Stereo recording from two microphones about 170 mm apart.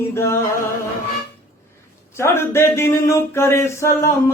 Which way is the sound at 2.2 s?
15° left (ahead or behind).